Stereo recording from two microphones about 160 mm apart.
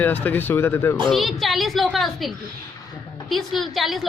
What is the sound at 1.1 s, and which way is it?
A woman's voice, centre (ahead or behind).